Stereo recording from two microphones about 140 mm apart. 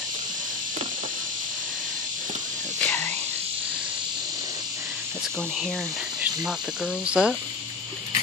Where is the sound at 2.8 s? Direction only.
15° left (ahead or behind).